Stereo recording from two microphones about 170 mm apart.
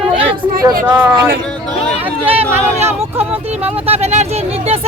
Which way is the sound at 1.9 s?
10° right (ahead or behind).